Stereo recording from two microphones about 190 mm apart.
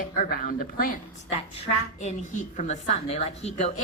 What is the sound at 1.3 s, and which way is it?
A woman's voice, 35° left (ahead or behind).